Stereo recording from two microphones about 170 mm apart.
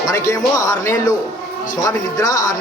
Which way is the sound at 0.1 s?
15° left (ahead or behind).